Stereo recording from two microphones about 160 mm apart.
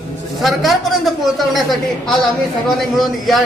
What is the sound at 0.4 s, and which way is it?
A woman's voice, centre (ahead or behind).